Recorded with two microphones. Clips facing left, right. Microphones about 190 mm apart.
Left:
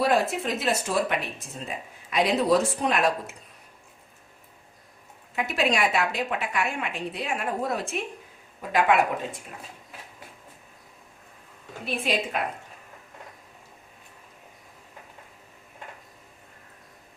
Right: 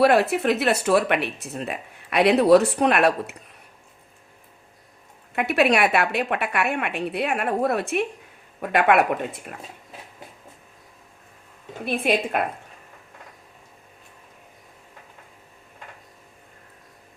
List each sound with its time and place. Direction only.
0.0 s speech: 65° right (ahead or behind)
5.3 s speech: 60° right (ahead or behind)
11.9 s speech: 55° right (ahead or behind)